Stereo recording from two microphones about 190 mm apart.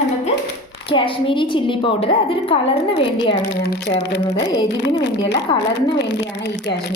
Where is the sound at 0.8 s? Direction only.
30° left (ahead or behind).